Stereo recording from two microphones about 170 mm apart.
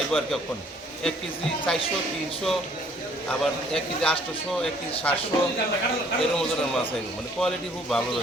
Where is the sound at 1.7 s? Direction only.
5° left (ahead or behind).